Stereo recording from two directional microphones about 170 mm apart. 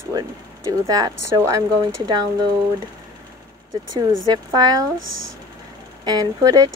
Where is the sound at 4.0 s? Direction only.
25° right (ahead or behind).